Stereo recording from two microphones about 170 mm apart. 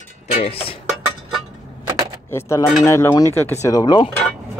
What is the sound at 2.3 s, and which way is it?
Speech, 15° left (ahead or behind).